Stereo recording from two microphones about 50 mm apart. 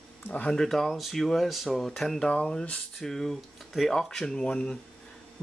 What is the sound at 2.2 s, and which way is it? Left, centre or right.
Speech, centre.